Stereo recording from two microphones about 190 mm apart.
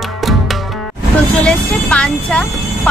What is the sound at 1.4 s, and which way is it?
Music, 5° left (ahead or behind).